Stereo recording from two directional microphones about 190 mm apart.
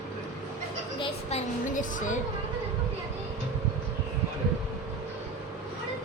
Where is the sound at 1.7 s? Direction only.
45° left (ahead or behind).